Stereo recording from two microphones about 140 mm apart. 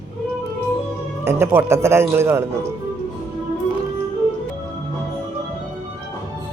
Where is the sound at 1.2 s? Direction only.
20° right (ahead or behind).